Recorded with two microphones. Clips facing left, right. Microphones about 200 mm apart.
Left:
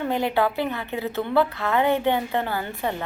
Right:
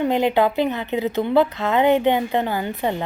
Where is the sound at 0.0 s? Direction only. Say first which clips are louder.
Right 5 dB; 20° right (ahead or behind).